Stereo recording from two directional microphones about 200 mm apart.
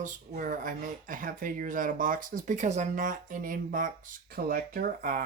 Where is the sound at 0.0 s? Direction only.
40° right (ahead or behind).